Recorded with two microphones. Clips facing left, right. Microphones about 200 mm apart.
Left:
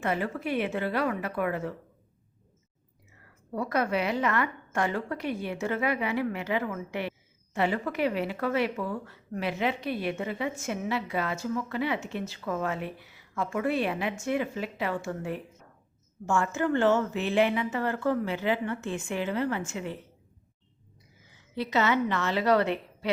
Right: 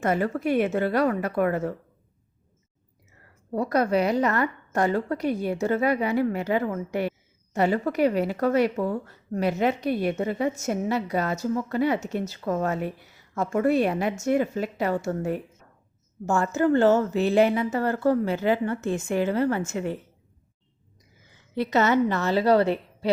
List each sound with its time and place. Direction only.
0.0 s a woman's voice: 45° right (ahead or behind)
3.5 s a woman's voice: 40° right (ahead or behind)
21.5 s a woman's voice: 50° right (ahead or behind); by 23.1 s 35° right (ahead or behind)